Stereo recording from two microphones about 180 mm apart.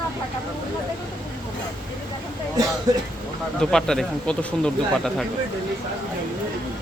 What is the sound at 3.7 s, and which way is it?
Speech, 5° left (ahead or behind).